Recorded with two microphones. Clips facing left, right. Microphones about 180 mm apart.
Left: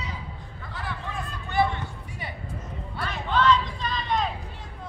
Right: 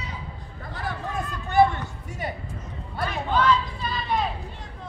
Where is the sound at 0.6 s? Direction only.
45° right (ahead or behind).